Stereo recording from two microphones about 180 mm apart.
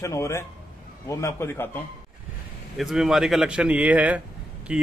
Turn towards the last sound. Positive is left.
turn(degrees=-5)  # may be behind; listen again after turning